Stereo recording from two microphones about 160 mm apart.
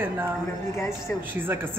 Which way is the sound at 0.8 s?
15° left (ahead or behind).